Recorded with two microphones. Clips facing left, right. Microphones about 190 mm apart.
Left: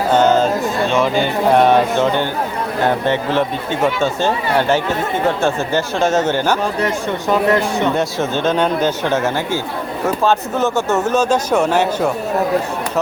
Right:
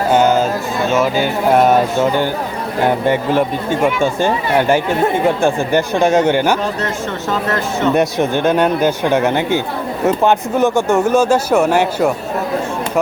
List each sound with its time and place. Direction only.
0.1 s a sound: 10° right (ahead or behind)
0.9 s speech: 5° right (ahead or behind)
6.8 s speech: 15° left (ahead or behind)
7.9 s speech: 15° right (ahead or behind)